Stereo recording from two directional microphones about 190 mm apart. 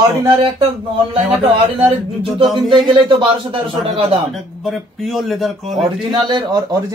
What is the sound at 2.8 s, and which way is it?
A man's voice, 25° right (ahead or behind).